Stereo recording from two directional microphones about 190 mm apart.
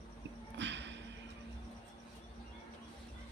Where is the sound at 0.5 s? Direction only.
70° right (ahead or behind).